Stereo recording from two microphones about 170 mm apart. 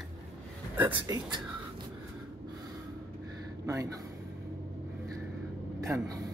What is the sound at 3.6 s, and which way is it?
Speech, 20° right (ahead or behind).